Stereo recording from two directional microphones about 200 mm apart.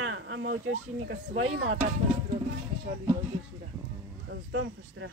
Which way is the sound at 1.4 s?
90° right.